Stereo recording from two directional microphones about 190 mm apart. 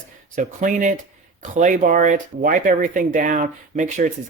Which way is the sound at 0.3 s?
40° right (ahead or behind).